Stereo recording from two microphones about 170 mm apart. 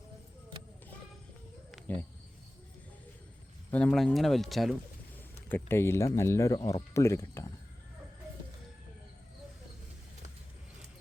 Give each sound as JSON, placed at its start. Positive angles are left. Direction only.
{"t": 1.7, "sound": "cricket", "side_deg": 10}
{"t": 3.7, "sound": "speech", "side_deg": 5}
{"t": 5.5, "sound": "speech", "side_deg": 15}